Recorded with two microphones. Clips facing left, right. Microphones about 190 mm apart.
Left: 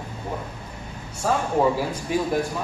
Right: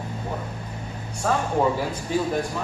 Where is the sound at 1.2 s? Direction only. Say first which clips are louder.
Left 1 dB; 5° left (ahead or behind).